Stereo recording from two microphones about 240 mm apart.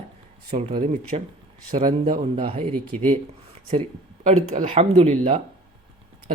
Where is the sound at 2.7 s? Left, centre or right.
Centre.